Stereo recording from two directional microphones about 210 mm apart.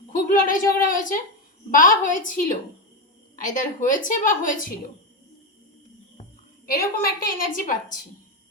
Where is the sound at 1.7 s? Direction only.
40° left (ahead or behind).